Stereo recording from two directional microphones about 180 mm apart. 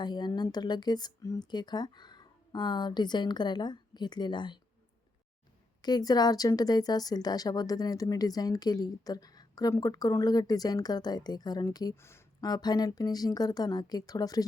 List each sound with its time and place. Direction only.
0.0 s a woman's voice: 25° left (ahead or behind)
5.8 s a woman's voice: 20° left (ahead or behind)